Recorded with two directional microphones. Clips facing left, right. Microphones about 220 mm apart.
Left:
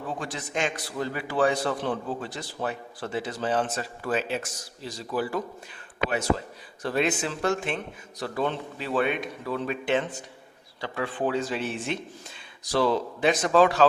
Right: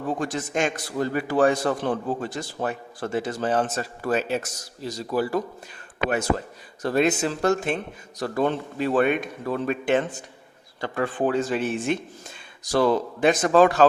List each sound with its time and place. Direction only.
0.2 s a man's voice: 45° right (ahead or behind)